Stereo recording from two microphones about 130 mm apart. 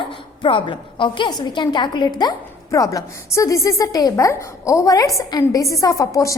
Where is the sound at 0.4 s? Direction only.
40° left (ahead or behind).